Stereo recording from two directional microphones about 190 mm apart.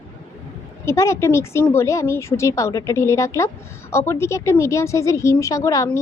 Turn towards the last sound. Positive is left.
turn(degrees=15)  # may be behind; listen again after turning